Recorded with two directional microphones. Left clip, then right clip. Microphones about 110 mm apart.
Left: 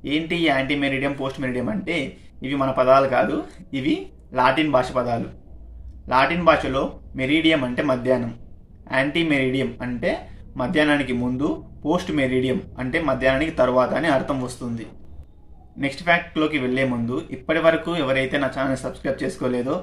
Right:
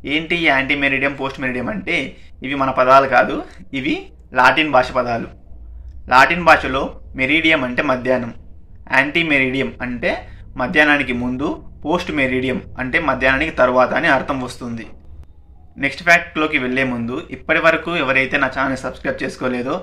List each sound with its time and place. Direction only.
0.0 s speech: 25° left (ahead or behind)
15.8 s speech: 25° left (ahead or behind)